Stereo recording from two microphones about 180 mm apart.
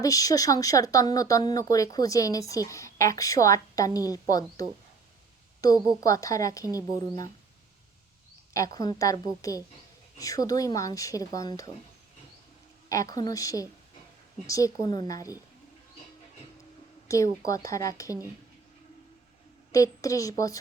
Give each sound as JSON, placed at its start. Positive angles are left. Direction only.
{"t": 0.0, "sound": "a woman's voice", "side_deg": 20}
{"t": 8.5, "sound": "speech", "side_deg": 20}
{"t": 12.9, "sound": "a woman's voice", "side_deg": 20}
{"t": 17.1, "sound": "a woman's voice", "side_deg": 20}
{"t": 19.7, "sound": "speech", "side_deg": 20}